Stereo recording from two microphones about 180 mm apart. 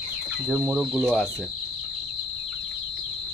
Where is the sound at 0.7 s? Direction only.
5° right (ahead or behind).